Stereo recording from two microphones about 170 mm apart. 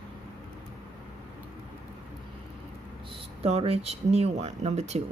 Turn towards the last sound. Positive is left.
turn(degrees=-40)  # may be behind; listen again after turning